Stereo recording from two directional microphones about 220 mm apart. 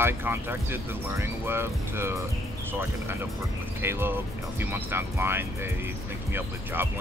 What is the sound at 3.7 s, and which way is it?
Speech, 10° right (ahead or behind).